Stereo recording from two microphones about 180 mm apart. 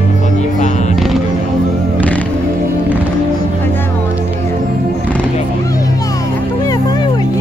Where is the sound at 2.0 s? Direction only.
10° left (ahead or behind).